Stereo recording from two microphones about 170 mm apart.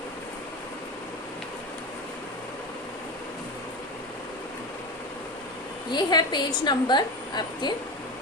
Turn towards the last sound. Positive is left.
turn(degrees=25)  # may be behind; listen again after turning